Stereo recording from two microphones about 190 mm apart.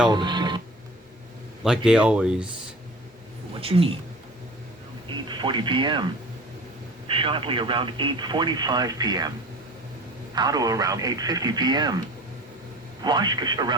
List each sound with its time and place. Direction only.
0.1 s speech: 25° right (ahead or behind)
1.6 s speech: 5° right (ahead or behind)
3.5 s speech: 30° right (ahead or behind)
5.0 s speech: 25° right (ahead or behind)
7.1 s speech: 25° right (ahead or behind)
10.3 s speech: 20° right (ahead or behind)
13.0 s speech: 20° right (ahead or behind)